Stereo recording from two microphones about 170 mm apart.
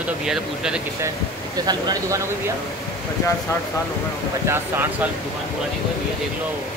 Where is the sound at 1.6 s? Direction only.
20° right (ahead or behind).